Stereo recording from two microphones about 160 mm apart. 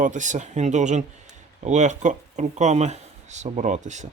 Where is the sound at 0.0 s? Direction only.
50° right (ahead or behind).